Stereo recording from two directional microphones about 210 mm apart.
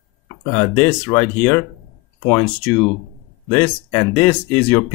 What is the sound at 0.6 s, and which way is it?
Speech, 5° left (ahead or behind).